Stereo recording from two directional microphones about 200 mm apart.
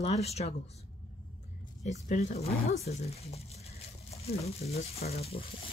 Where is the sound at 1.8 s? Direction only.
35° left (ahead or behind).